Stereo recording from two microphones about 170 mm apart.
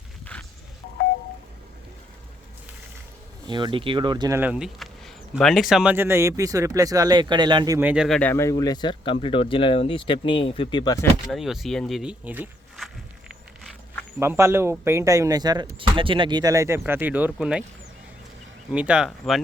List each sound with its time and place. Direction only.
3.4 s speech: 25° right (ahead or behind)
4.4 s speech: 5° right (ahead or behind); by 7.8 s 25° right (ahead or behind)
7.8 s speech: 10° right (ahead or behind)
8.0 s speech: 5° left (ahead or behind); by 11.0 s 25° left (ahead or behind)
11.3 s speech: centre (ahead or behind)
14.2 s speech: 15° right (ahead or behind)
18.7 s speech: 5° right (ahead or behind)